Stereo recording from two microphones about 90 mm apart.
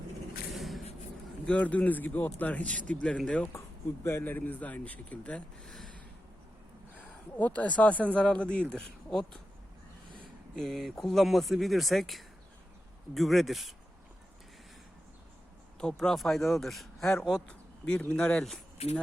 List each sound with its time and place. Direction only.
0.5 s a sound: centre (ahead or behind)
1.5 s speech: 15° left (ahead or behind)
6.9 s speech: 15° left (ahead or behind)
10.5 s speech: 5° left (ahead or behind)
15.8 s speech: 5° left (ahead or behind)